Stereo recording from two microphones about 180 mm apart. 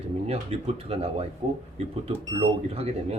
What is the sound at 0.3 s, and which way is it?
Speech, 35° right (ahead or behind).